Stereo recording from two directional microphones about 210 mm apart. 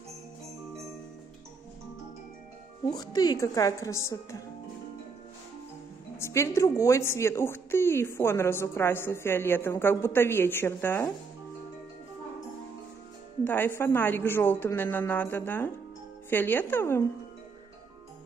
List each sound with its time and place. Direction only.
2.9 s a woman's voice: 20° left (ahead or behind)
6.1 s a woman's voice: 10° left (ahead or behind)
13.4 s a woman's voice: 10° left (ahead or behind)